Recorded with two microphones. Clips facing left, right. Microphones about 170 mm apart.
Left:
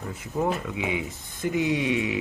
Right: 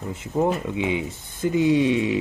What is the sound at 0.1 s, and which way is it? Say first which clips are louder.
Speech: right 4 dB; 25° right (ahead or behind).